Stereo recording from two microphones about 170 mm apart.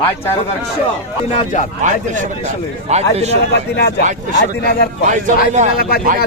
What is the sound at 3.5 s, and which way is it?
Speech, 75° left (ahead or behind).